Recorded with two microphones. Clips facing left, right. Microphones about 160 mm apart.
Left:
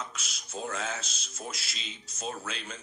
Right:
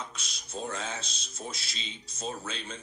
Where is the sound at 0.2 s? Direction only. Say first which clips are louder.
Even; 5° left (ahead or behind).